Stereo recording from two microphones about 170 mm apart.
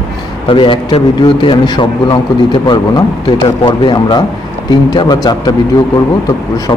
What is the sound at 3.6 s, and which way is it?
A man's voice, 25° left (ahead or behind).